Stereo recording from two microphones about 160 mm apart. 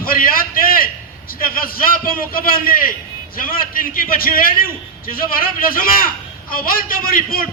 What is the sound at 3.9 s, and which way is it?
A man's voice, 65° left (ahead or behind).